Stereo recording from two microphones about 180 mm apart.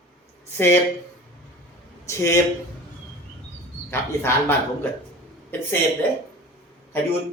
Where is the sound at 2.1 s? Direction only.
15° left (ahead or behind).